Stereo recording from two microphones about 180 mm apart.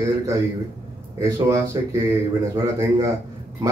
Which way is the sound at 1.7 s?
20° right (ahead or behind).